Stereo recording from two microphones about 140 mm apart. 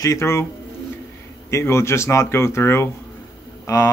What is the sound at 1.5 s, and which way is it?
Speech, 20° left (ahead or behind).